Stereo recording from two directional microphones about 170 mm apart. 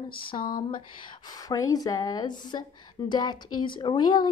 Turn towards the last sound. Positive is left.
turn(degrees=25)  # may be behind; listen again after turning